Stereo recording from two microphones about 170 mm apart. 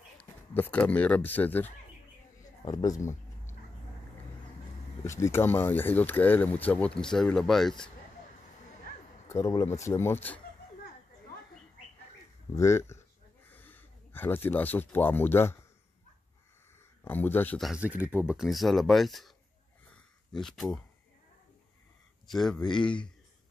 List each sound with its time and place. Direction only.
0.2 s speech: 10° left (ahead or behind)
2.6 s a sound: 20° left (ahead or behind)
5.0 s speech: 15° left (ahead or behind)
9.3 s speech: 20° left (ahead or behind)
12.5 s speech: 15° left (ahead or behind)
17.0 s speech: 10° left (ahead or behind)
17.6 s speech: 5° right (ahead or behind)
19.9 s a sound: centre (ahead or behind)
22.3 s speech: 5° left (ahead or behind)